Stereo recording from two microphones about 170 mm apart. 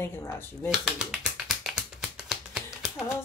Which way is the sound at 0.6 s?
5° right (ahead or behind).